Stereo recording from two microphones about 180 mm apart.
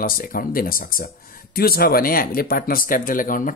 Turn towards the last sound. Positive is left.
turn(degrees=50)  # may be behind; listen again after turning